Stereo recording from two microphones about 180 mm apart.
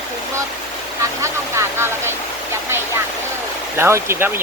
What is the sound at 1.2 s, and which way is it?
Speech, 15° right (ahead or behind).